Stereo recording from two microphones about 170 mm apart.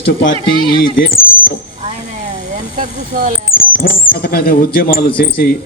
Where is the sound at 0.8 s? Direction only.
55° left (ahead or behind).